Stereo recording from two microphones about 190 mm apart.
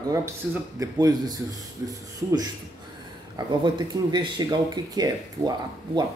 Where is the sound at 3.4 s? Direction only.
25° right (ahead or behind).